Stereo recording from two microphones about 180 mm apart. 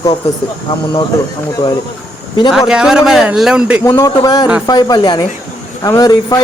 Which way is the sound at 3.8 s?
20° left (ahead or behind).